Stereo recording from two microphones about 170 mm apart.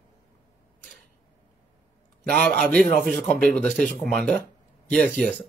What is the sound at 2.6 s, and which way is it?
Speech, 5° left (ahead or behind).